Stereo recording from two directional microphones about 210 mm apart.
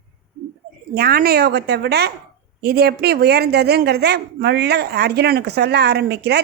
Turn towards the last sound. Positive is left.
turn(degrees=-50)  # may be behind; listen again after turning